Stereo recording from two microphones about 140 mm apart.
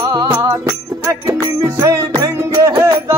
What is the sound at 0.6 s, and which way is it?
Music, 20° right (ahead or behind).